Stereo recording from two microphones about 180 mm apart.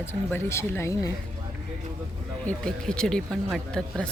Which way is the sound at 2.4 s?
5° left (ahead or behind).